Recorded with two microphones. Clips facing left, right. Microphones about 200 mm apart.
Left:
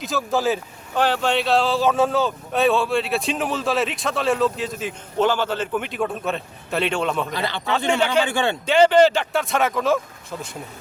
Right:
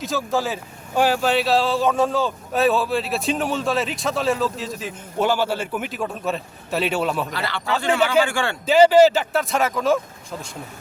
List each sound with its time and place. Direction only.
0.0 s speech: centre (ahead or behind)
7.3 s a man's voice: 20° left (ahead or behind)
8.6 s speech: 5° right (ahead or behind)